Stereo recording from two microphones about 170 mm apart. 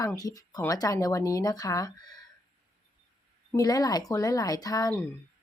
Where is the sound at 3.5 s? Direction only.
20° left (ahead or behind).